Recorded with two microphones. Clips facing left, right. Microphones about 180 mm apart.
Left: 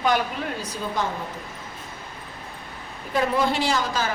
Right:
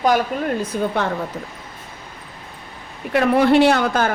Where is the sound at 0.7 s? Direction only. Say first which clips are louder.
Right 6 dB; 65° right (ahead or behind).